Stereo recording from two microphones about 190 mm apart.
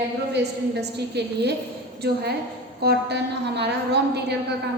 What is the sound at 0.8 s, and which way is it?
A woman's voice, 60° right (ahead or behind).